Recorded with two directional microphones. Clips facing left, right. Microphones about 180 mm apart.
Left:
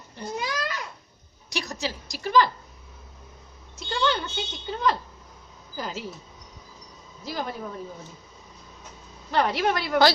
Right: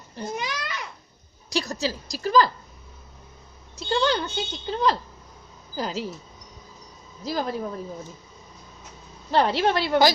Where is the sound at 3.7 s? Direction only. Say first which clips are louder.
Right 3 dB; 35° right (ahead or behind).